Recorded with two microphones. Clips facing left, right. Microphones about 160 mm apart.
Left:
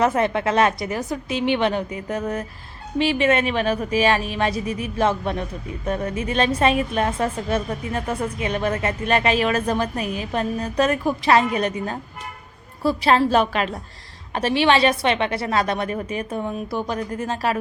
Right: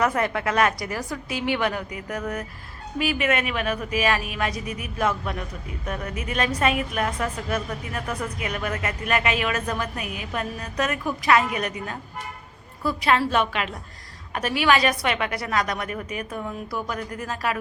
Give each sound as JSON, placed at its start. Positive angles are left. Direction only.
{"t": 0.0, "sound": "a woman's voice", "side_deg": 25}